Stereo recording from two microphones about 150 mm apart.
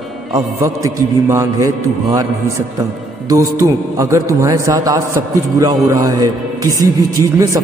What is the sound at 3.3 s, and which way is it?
A man's voice, 20° right (ahead or behind).